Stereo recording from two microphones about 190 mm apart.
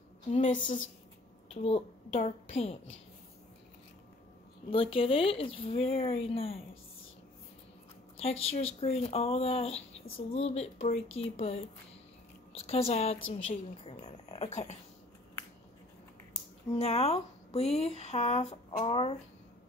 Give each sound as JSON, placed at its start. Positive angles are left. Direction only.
{"t": 0.3, "sound": "speech", "side_deg": 40}
{"t": 4.9, "sound": "speech", "side_deg": 30}
{"t": 8.2, "sound": "speech", "side_deg": 30}
{"t": 16.7, "sound": "speech", "side_deg": 35}